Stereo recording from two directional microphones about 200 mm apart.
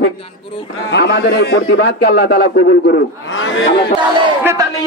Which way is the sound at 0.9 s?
55° left (ahead or behind).